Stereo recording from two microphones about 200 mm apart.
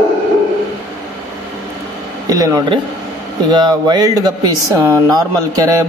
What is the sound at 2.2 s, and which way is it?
Speech, 15° right (ahead or behind).